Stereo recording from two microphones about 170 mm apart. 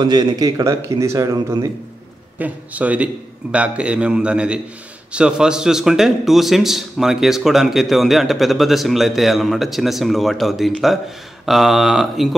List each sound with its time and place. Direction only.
0.0 s speech: 25° right (ahead or behind)
2.3 s a man's voice: 10° right (ahead or behind)